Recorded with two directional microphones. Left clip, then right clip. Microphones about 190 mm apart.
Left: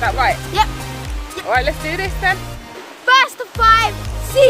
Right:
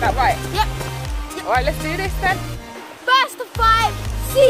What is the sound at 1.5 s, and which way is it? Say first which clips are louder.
Speech: left 2 dB; 15° right (ahead or behind).